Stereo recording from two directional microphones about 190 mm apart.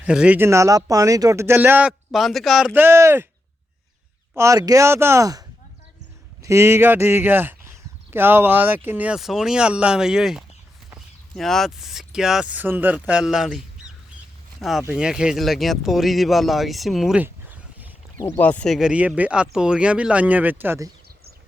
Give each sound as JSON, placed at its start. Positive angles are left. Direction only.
{"t": 0.0, "sound": "speech", "side_deg": -5}
{"t": 4.4, "sound": "speech", "side_deg": -15}
{"t": 6.4, "sound": "speech", "side_deg": -15}
{"t": 18.2, "sound": "speech", "side_deg": 10}